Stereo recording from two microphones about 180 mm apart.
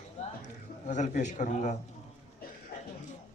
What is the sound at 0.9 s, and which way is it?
Speech, 40° left (ahead or behind).